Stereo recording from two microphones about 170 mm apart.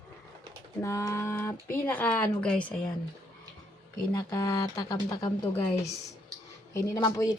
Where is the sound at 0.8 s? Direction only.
15° left (ahead or behind).